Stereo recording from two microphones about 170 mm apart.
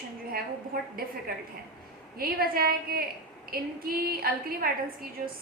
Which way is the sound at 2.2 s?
60° right (ahead or behind).